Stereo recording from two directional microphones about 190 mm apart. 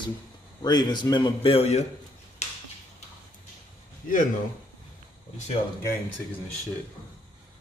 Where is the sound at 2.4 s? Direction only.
35° left (ahead or behind).